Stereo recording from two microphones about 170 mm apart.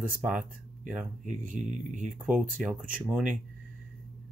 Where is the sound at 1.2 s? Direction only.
50° right (ahead or behind).